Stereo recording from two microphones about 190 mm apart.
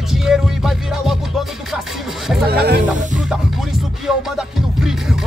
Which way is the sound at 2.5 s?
55° right (ahead or behind).